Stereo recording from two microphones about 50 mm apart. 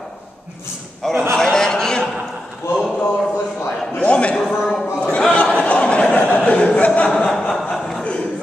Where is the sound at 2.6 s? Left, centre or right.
Left.